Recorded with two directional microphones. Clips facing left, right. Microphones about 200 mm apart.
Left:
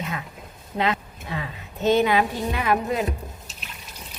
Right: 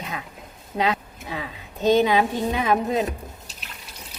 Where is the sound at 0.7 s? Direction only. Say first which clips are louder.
Right 1 dB; 15° right (ahead or behind).